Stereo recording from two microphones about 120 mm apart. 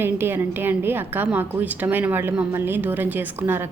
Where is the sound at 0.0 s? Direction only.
20° right (ahead or behind).